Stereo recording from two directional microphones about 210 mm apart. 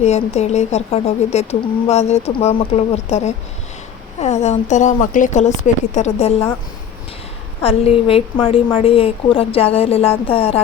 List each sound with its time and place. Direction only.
0.0 s speech: 30° left (ahead or behind)
7.6 s a woman's voice: 30° left (ahead or behind)